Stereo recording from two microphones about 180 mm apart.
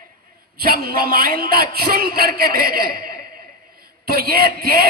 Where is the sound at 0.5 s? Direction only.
55° right (ahead or behind).